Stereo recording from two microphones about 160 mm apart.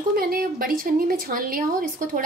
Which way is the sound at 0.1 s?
65° right (ahead or behind).